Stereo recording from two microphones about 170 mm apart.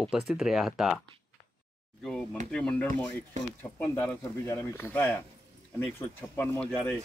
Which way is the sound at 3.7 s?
20° left (ahead or behind).